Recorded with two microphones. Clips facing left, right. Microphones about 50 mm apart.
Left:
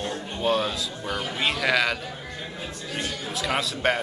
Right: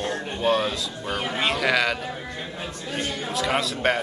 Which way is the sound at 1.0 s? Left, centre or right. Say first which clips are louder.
Right 3 dB; right.